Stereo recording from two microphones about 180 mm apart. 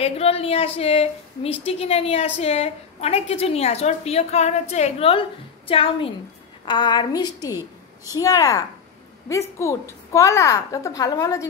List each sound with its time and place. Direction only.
0.0 s a woman's voice: 35° left (ahead or behind)